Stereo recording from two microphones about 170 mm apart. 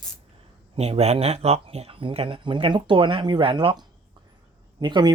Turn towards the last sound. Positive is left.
turn(degrees=-25)  # may be behind; listen again after turning